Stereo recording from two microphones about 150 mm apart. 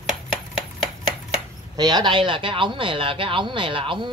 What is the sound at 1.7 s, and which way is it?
A man's voice, 25° right (ahead or behind).